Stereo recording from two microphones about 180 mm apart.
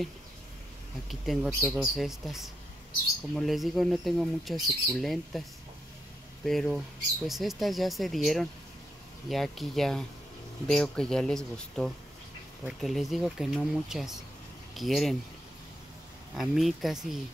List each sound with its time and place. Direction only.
1.0 s speech: centre (ahead or behind)
6.4 s speech: centre (ahead or behind)
16.3 s speech: centre (ahead or behind)